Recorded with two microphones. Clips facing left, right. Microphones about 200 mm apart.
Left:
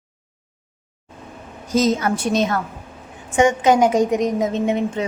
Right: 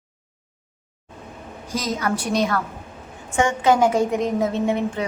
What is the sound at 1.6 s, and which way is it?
A woman's voice, 25° left (ahead or behind).